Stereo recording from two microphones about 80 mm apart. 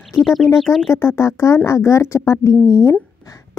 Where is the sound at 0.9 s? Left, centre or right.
Left.